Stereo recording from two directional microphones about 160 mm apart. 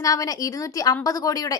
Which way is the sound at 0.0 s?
20° left (ahead or behind).